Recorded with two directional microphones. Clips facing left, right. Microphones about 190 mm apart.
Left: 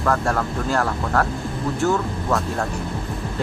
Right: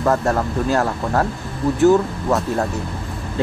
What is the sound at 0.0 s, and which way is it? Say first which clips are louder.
Speech: right 3 dB; 20° right (ahead or behind).